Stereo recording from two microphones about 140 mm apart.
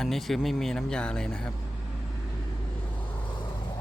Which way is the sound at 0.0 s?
Centre (ahead or behind).